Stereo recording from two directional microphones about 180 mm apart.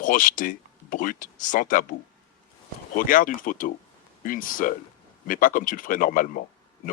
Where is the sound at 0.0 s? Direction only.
50° left (ahead or behind).